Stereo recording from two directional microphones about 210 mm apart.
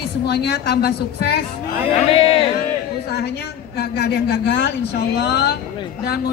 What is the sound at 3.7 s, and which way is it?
A man's voice, 50° left (ahead or behind).